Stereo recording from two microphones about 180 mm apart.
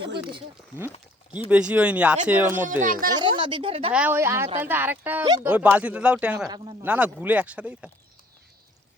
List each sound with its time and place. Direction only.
1.5 s speech: 5° right (ahead or behind)
2.8 s speech: 50° right (ahead or behind)
3.2 s speech: 25° right (ahead or behind)
3.9 s speech: 10° right (ahead or behind)